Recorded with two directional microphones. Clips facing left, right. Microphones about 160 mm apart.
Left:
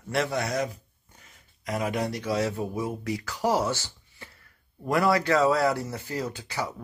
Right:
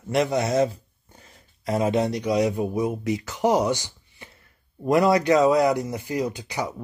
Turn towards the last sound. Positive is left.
turn(degrees=-15)  # may be behind; listen again after turning